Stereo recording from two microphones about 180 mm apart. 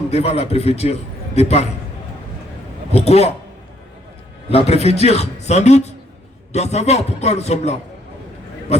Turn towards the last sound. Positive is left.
turn(degrees=35)  # may be behind; listen again after turning